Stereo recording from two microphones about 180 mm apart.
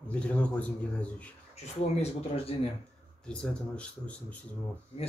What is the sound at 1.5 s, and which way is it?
Speech, 35° left (ahead or behind).